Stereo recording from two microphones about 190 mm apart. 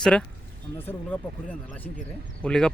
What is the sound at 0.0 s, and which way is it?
Speech, 5° left (ahead or behind).